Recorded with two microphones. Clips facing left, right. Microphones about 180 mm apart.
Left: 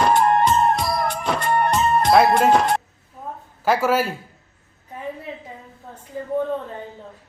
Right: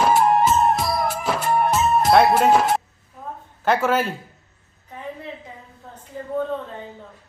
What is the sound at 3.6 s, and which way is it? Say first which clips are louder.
Speech: left 1 dB; 5° left (ahead or behind).